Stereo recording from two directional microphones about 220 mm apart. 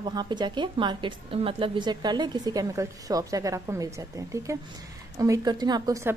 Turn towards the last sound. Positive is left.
turn(degrees=-15)  # may be behind; listen again after turning